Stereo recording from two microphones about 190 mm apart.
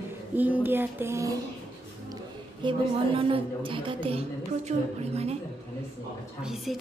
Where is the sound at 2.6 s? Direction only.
25° right (ahead or behind).